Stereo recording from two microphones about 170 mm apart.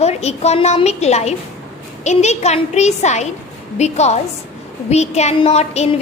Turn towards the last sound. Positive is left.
turn(degrees=40)  # may be behind; listen again after turning